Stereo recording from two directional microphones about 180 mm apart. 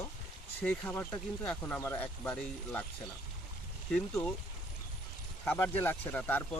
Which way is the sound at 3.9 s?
10° left (ahead or behind).